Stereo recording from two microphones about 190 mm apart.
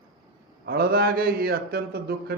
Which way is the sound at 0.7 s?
50° right (ahead or behind).